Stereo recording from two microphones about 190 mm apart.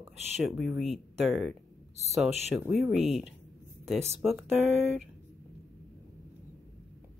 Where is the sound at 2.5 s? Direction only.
Centre (ahead or behind).